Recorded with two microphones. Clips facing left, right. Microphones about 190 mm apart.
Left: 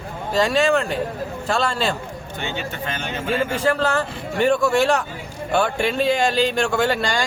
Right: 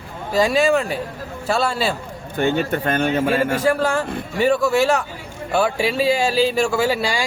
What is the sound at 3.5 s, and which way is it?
Speech, 10° right (ahead or behind).